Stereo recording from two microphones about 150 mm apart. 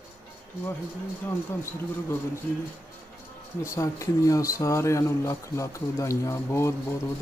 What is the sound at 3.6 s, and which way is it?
Speech, 20° left (ahead or behind).